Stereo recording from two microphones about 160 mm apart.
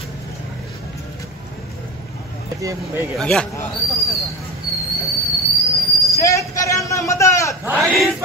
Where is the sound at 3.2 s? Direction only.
5° left (ahead or behind).